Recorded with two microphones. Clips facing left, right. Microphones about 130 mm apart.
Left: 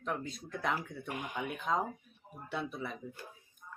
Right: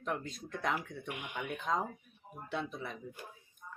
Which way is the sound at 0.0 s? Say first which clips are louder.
Even; centre (ahead or behind).